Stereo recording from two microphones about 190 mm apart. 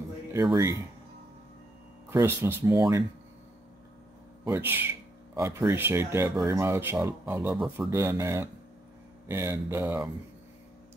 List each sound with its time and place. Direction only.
0.3 s speech: 15° right (ahead or behind)
2.0 s speech: 15° right (ahead or behind)
4.5 s speech: 10° right (ahead or behind)